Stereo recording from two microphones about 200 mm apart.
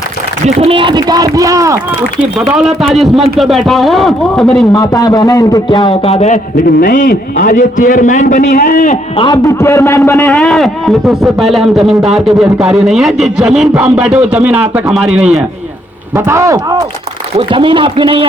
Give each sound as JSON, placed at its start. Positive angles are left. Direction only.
{"t": 0.4, "sound": "speech", "side_deg": -30}
{"t": 2.5, "sound": "a man's voice", "side_deg": 0}
{"t": 4.7, "sound": "a man's voice", "side_deg": 15}
{"t": 9.1, "sound": "a man's voice", "side_deg": 20}